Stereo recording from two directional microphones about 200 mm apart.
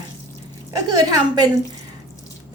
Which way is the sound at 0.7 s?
20° right (ahead or behind).